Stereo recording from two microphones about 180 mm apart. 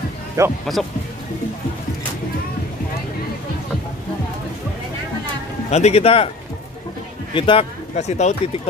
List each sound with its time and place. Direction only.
0.4 s speech: 15° right (ahead or behind)
5.7 s speech: 35° left (ahead or behind)
7.3 s speech: 30° left (ahead or behind)